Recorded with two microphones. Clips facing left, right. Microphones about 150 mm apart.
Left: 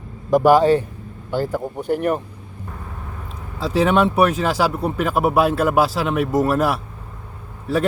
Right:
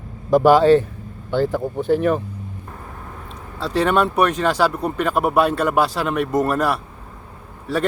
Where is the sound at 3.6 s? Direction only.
5° left (ahead or behind).